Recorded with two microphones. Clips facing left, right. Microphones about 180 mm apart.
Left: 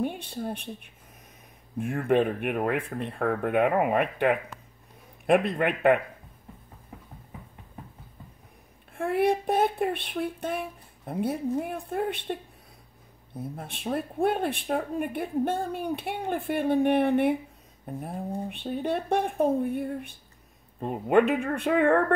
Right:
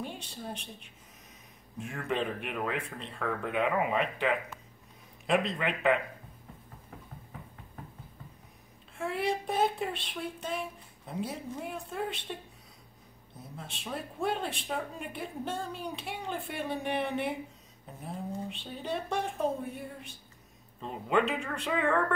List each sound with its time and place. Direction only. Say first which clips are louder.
0.0 s speech: left 9 dB; 55° left (ahead or behind)
8.9 s speech: left 7 dB; 55° left (ahead or behind)
13.4 s speech: left 8 dB; 55° left (ahead or behind)